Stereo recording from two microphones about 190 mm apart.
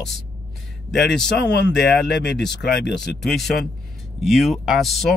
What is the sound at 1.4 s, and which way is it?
Speech, 60° left (ahead or behind).